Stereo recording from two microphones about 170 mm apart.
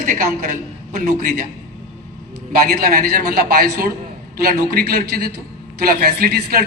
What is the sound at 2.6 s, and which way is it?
A man's voice, 55° right (ahead or behind).